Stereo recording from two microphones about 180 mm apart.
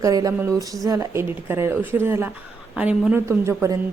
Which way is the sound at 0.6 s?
20° right (ahead or behind).